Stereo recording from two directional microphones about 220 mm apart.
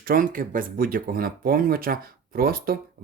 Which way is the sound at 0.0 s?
40° right (ahead or behind).